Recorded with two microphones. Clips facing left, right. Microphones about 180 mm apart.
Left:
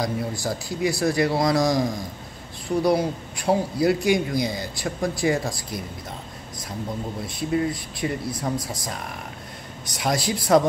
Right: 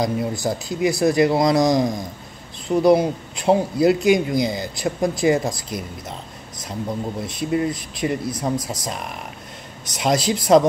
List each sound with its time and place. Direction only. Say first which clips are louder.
0.0 s speech: right 4 dB; 20° right (ahead or behind)
7.2 s speech: right 1 dB; 20° right (ahead or behind)